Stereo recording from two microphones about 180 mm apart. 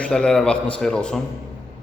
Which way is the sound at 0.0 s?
5° left (ahead or behind).